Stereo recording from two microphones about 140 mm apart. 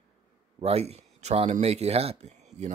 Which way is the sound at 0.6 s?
50° right (ahead or behind).